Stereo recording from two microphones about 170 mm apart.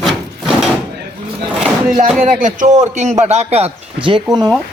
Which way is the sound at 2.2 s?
45° right (ahead or behind).